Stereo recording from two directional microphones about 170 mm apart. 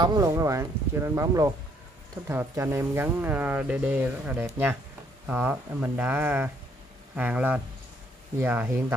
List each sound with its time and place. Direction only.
0.0 s speech: 20° right (ahead or behind)